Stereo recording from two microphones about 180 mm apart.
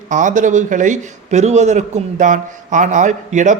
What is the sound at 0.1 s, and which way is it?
Speech, 45° right (ahead or behind).